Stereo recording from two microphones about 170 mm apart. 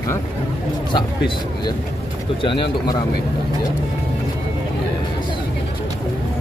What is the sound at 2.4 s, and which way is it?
Speech, 30° left (ahead or behind).